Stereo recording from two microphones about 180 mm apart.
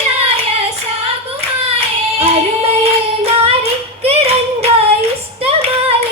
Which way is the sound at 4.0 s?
35° right (ahead or behind).